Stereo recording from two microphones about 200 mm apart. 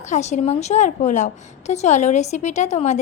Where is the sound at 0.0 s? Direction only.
35° left (ahead or behind).